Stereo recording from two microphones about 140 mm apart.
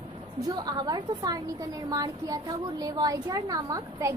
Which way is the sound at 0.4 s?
30° right (ahead or behind).